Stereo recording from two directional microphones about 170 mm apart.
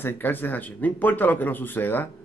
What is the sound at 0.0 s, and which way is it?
A man's voice, 10° left (ahead or behind).